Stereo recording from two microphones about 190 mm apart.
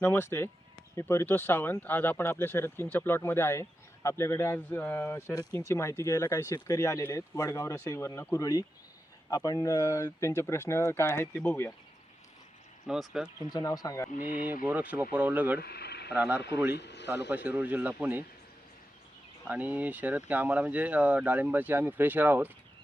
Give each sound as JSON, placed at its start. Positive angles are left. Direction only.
{"t": 0.0, "sound": "speech", "side_deg": 10}
{"t": 12.9, "sound": "speech", "side_deg": -5}
{"t": 13.5, "sound": "speech", "side_deg": 20}
{"t": 14.1, "sound": "speech", "side_deg": 45}
{"t": 14.6, "sound": "speech", "side_deg": -10}
{"t": 15.5, "sound": "a sound", "side_deg": 55}
{"t": 16.1, "sound": "speech", "side_deg": -10}
{"t": 16.7, "sound": "speech", "side_deg": 65}
{"t": 17.2, "sound": "speech", "side_deg": -10}
{"t": 19.5, "sound": "speech", "side_deg": -10}